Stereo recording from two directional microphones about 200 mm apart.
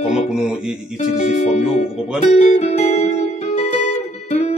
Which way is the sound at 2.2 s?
35° left (ahead or behind).